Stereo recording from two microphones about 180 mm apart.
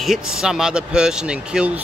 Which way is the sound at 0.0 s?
Centre (ahead or behind).